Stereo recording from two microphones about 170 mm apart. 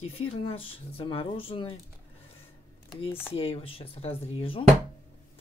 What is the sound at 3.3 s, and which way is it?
Speech, 35° left (ahead or behind).